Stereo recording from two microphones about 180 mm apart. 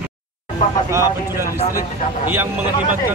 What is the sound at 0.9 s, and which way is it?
Speech, 15° right (ahead or behind).